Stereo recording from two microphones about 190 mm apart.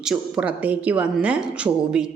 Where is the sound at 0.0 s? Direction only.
5° right (ahead or behind).